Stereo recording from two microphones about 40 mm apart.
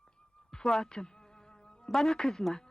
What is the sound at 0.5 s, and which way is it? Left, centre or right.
Speech, centre.